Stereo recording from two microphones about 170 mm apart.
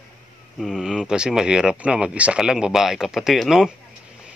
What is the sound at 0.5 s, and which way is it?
Speech, centre (ahead or behind).